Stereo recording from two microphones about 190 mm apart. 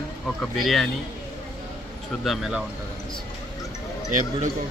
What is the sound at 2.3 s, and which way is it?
Speech, centre (ahead or behind).